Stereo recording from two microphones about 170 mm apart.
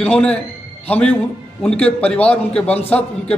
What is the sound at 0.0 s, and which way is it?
A man's voice, 5° left (ahead or behind).